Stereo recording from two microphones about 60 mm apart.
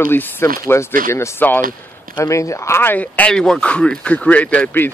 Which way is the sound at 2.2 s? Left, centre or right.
Left.